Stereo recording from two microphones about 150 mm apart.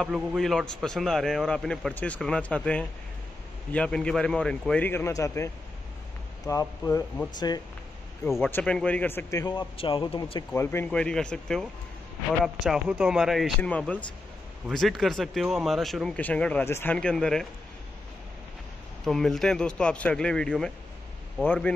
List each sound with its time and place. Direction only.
0.0 s a man's voice: centre (ahead or behind); by 7.6 s 25° left (ahead or behind)
8.5 s speech: 10° left (ahead or behind); by 10.4 s 35° left (ahead or behind)
10.5 s a man's voice: 15° left (ahead or behind)
12.9 s a man's voice: 5° right (ahead or behind)
13.6 s a man's voice: 10° left (ahead or behind)
19.0 s a man's voice: centre (ahead or behind)